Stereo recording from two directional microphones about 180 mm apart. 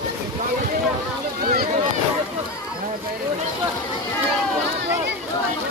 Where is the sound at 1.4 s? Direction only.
55° right (ahead or behind).